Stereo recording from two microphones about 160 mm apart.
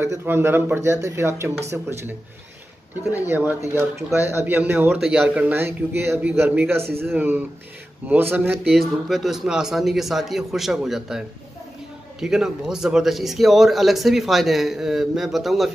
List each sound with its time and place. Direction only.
0.0 s a man's voice: 15° right (ahead or behind)
8.6 s a man's voice: centre (ahead or behind)